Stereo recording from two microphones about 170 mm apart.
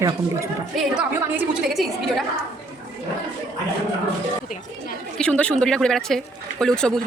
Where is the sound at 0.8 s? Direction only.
5° right (ahead or behind).